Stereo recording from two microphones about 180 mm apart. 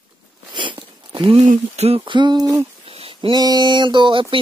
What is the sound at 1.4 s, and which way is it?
Speech, 35° right (ahead or behind).